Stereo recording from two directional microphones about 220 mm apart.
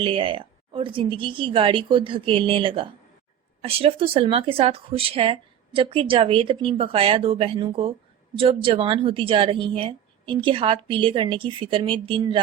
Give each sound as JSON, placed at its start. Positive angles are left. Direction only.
{"t": 0.0, "sound": "speech", "side_deg": -25}